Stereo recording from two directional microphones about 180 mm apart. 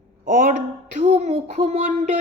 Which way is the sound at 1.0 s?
40° right (ahead or behind).